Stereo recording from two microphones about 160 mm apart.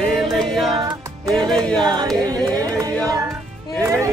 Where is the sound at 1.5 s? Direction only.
5° left (ahead or behind).